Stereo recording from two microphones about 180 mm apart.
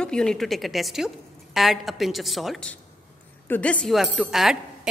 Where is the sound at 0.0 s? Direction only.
5° left (ahead or behind).